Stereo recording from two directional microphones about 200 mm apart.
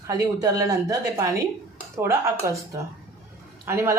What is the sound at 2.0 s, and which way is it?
Speech, 15° right (ahead or behind).